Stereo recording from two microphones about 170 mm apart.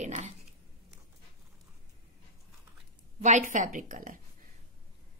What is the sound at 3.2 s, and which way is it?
A woman's voice, 45° right (ahead or behind).